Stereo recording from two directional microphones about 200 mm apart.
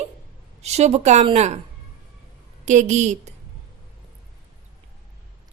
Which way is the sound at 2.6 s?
35° right (ahead or behind).